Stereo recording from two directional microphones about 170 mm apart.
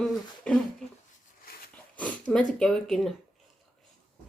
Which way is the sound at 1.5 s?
65° left (ahead or behind).